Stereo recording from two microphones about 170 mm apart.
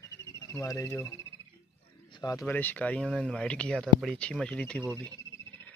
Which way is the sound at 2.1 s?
20° left (ahead or behind).